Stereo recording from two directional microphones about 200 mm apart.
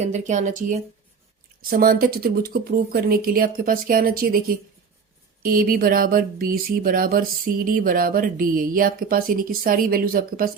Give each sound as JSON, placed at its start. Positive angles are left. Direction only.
{"t": 0.0, "sound": "speech", "side_deg": -35}